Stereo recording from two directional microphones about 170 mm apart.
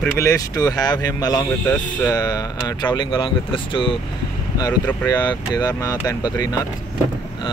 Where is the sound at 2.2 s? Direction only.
20° left (ahead or behind).